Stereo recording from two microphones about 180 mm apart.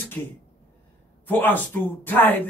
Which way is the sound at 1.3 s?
10° left (ahead or behind).